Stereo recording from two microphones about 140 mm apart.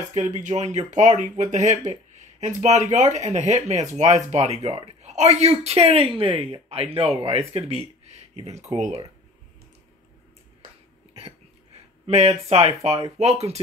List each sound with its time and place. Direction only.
0.1 s speech: 60° right (ahead or behind)
12.1 s speech: 50° right (ahead or behind)